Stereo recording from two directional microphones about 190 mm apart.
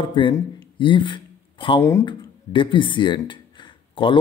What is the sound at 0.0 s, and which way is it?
Speech, 25° left (ahead or behind).